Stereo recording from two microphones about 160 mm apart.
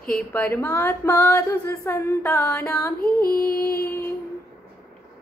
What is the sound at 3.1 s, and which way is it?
Female singing, 65° left (ahead or behind).